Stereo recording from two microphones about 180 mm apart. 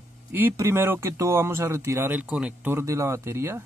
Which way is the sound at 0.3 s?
15° right (ahead or behind).